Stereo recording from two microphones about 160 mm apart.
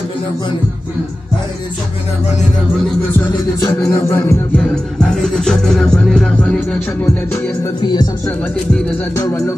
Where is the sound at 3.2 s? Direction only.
15° left (ahead or behind).